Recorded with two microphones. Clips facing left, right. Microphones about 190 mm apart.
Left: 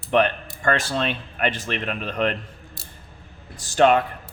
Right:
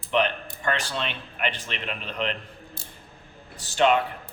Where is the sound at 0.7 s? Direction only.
40° left (ahead or behind).